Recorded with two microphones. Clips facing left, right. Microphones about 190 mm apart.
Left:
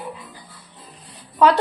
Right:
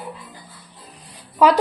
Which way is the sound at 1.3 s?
10° right (ahead or behind).